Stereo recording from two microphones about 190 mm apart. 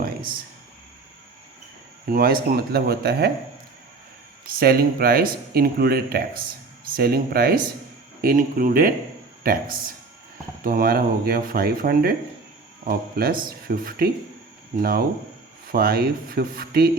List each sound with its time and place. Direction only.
2.0 s speech: 50° right (ahead or behind)
4.4 s speech: 50° right (ahead or behind)